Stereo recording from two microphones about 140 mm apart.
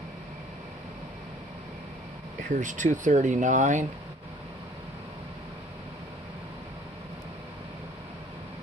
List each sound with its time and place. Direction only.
2.6 s speech: 60° right (ahead or behind)